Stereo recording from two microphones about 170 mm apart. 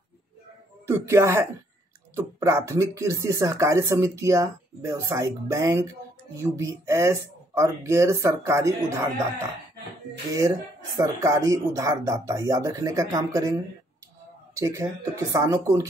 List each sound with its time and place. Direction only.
0.8 s speech: 15° right (ahead or behind)
11.0 s speech: 20° right (ahead or behind)